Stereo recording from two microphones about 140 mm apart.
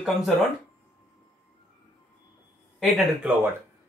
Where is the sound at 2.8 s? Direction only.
Centre (ahead or behind).